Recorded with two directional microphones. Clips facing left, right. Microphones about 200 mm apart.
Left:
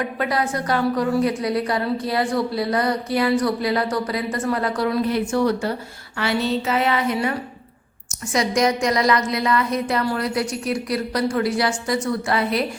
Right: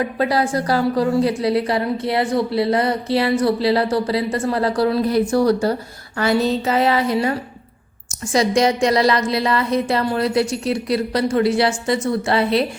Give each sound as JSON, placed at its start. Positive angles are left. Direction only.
{"t": 0.0, "sound": "a woman's voice", "side_deg": -30}